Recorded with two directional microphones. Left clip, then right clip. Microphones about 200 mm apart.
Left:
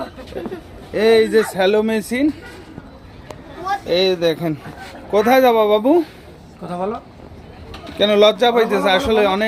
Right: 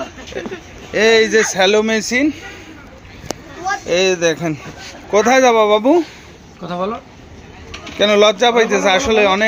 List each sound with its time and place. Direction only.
0.9 s a man's voice: centre (ahead or behind)
3.8 s a man's voice: centre (ahead or behind)
6.6 s speech: 40° right (ahead or behind)
7.9 s a man's voice: centre (ahead or behind)